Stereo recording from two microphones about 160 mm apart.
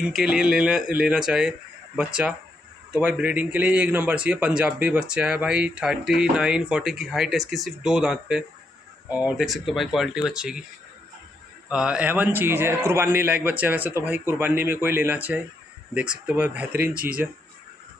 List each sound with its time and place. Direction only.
0.0 s speech: 5° right (ahead or behind)
2.9 s a man's voice: 10° right (ahead or behind)
11.7 s a man's voice: 5° right (ahead or behind)
16.9 s speech: 65° right (ahead or behind)